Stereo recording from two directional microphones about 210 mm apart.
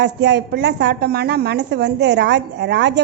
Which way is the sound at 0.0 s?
55° right (ahead or behind).